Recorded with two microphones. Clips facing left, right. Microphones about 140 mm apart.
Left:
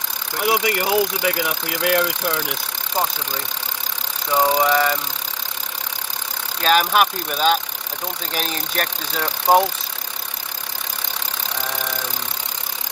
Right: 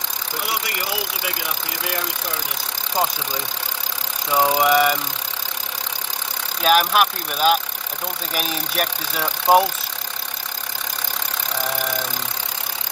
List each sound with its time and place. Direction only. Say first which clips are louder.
0.4 s speech: left 9 dB; 55° left (ahead or behind)
4.3 s speech: even; 10° right (ahead or behind)
6.6 s speech: even; 5° right (ahead or behind)